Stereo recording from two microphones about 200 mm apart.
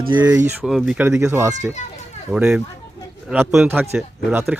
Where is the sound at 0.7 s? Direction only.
Centre (ahead or behind).